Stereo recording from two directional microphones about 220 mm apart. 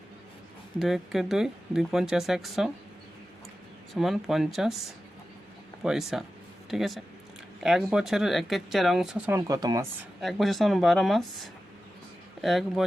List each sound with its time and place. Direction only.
0.8 s speech: centre (ahead or behind)
3.9 s speech: centre (ahead or behind); by 9.8 s 15° right (ahead or behind)
10.2 s speech: centre (ahead or behind)